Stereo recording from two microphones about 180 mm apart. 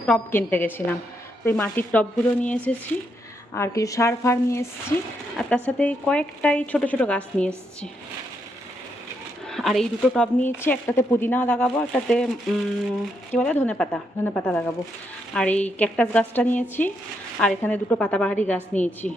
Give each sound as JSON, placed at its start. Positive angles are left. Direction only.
{"t": 0.0, "sound": "a woman's voice", "side_deg": 10}
{"t": 9.5, "sound": "a woman's voice", "side_deg": 0}